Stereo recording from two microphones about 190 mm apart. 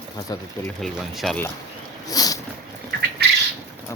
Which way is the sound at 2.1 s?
20° left (ahead or behind).